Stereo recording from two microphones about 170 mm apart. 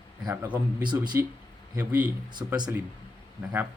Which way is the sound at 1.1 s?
15° right (ahead or behind).